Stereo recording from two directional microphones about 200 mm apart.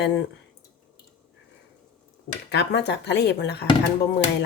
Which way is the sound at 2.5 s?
60° left (ahead or behind).